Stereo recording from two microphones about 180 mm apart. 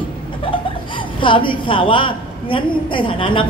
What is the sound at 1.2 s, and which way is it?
A man's voice, 25° left (ahead or behind).